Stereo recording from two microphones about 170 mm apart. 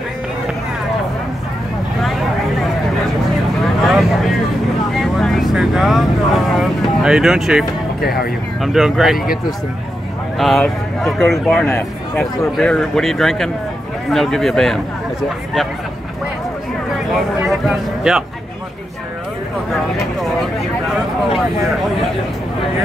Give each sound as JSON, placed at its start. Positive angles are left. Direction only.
{"t": 3.8, "sound": "vehicle", "side_deg": 0}
{"t": 8.0, "sound": "speech", "side_deg": 65}
{"t": 8.5, "sound": "speech", "side_deg": 0}
{"t": 10.3, "sound": "speech", "side_deg": 0}
{"t": 17.4, "sound": "a man's voice", "side_deg": -5}